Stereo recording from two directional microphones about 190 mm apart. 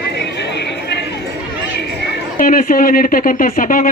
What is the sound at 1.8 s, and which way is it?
Speech, 60° left (ahead or behind).